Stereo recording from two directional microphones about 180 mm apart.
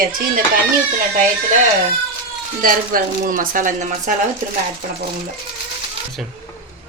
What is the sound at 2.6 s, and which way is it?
A woman's voice, 50° right (ahead or behind).